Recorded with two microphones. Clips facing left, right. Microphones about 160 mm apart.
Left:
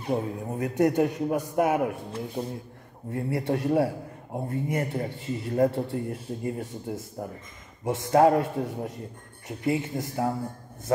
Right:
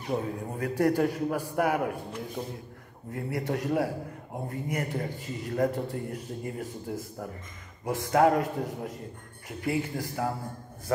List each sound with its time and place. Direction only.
0.0 s speech: 25° left (ahead or behind)